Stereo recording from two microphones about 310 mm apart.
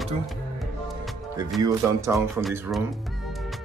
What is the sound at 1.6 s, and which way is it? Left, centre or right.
Speech, centre.